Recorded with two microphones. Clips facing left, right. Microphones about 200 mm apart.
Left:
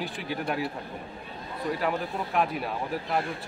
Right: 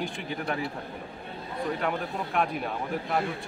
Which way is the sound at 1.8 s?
5° left (ahead or behind).